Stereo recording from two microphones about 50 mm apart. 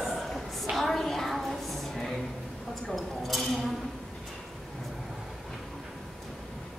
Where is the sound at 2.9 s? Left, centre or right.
Centre.